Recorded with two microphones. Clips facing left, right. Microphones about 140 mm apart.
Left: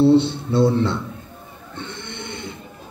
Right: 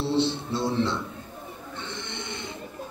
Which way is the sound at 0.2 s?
55° left (ahead or behind).